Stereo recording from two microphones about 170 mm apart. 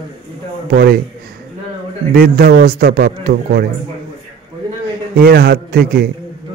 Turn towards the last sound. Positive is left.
turn(degrees=-65)  # may be behind; listen again after turning